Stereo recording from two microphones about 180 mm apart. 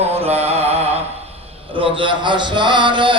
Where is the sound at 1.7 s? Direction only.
30° right (ahead or behind).